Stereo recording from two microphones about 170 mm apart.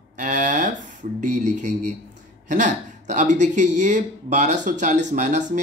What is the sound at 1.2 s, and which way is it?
Speech, 45° right (ahead or behind).